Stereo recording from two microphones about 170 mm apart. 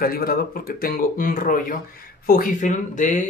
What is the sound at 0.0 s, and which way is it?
Speech, 60° left (ahead or behind).